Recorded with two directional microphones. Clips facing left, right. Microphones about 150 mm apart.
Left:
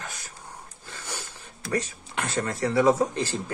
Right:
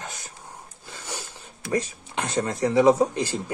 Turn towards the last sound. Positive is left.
turn(degrees=-15)  # may be behind; listen again after turning